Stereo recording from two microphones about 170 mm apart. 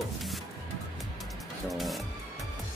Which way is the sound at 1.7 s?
Centre (ahead or behind).